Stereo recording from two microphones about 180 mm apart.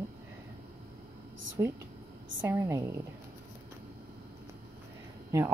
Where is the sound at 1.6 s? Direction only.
15° right (ahead or behind).